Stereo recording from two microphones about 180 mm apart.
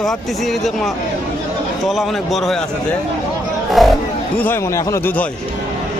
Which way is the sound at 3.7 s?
Centre (ahead or behind).